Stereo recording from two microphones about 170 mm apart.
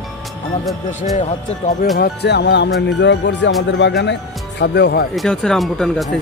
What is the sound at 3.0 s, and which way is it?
Speech, 90° left.